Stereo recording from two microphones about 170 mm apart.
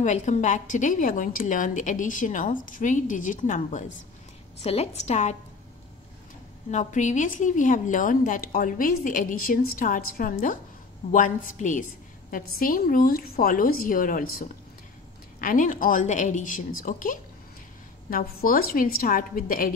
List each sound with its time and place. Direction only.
0.0 s a woman's voice: 45° left (ahead or behind)
6.7 s a woman's voice: 45° left (ahead or behind)
15.4 s a woman's voice: 50° left (ahead or behind)